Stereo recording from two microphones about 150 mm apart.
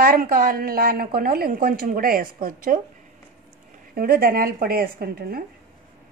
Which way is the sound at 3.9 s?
80° right.